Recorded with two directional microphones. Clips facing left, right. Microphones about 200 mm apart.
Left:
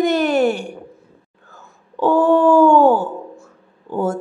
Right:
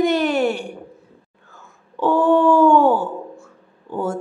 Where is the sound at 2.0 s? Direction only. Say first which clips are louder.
Left 2 dB; 45° left (ahead or behind).